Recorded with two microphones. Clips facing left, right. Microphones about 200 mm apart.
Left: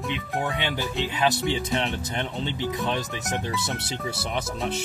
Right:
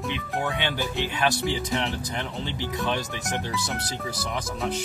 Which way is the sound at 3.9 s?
25° left (ahead or behind).